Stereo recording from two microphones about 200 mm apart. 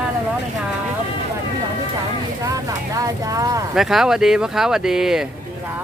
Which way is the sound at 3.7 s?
Centre (ahead or behind).